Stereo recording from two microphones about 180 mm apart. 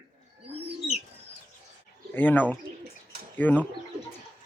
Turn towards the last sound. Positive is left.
turn(degrees=10)  # may be behind; listen again after turning